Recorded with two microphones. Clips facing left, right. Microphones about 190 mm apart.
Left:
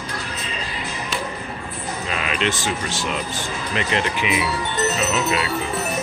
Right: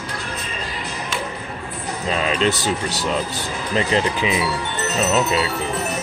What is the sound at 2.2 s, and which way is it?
Speech, 35° right (ahead or behind).